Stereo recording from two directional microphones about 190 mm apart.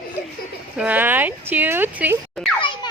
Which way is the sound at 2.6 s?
25° left (ahead or behind).